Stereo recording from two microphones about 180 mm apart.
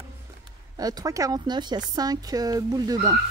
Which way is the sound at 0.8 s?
20° right (ahead or behind).